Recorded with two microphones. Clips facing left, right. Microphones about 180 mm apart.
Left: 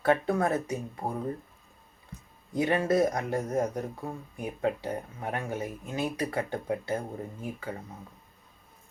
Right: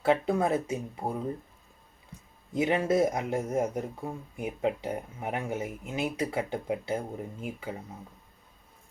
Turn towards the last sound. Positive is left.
turn(degrees=-15)  # may be behind; listen again after turning